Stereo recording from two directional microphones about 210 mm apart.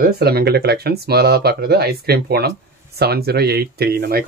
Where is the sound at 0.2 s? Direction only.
50° right (ahead or behind).